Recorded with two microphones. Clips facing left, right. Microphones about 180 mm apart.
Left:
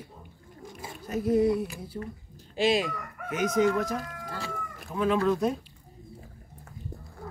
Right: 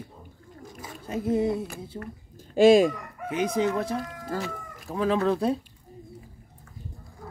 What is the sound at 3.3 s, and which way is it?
Speech, 30° right (ahead or behind).